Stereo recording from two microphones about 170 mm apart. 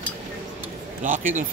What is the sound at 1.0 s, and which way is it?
Speech, 50° right (ahead or behind).